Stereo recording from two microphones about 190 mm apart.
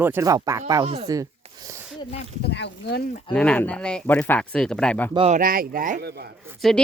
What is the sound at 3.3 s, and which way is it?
Speech, 5° left (ahead or behind).